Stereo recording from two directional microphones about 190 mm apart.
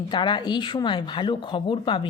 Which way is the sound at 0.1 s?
25° left (ahead or behind).